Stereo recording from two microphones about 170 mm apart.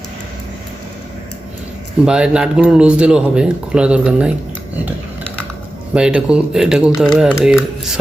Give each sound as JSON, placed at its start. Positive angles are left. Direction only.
{"t": 2.0, "sound": "speech", "side_deg": -5}
{"t": 5.9, "sound": "speech", "side_deg": -5}